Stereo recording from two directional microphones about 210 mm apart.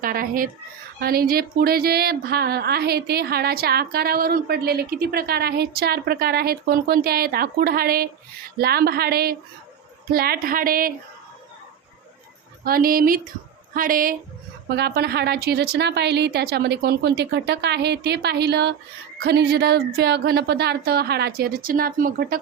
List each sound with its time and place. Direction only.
0.0 s speech: 40° right (ahead or behind)
12.6 s speech: 45° right (ahead or behind)